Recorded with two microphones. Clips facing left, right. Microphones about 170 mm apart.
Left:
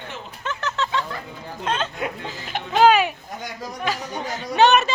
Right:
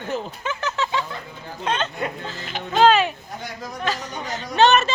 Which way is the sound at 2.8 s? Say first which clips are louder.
Even; 10° left (ahead or behind).